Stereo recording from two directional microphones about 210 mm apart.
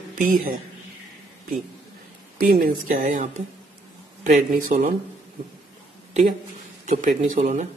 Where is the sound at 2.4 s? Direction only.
45° right (ahead or behind).